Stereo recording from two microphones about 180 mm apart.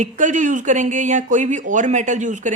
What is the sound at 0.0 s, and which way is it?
A woman's voice, 45° right (ahead or behind).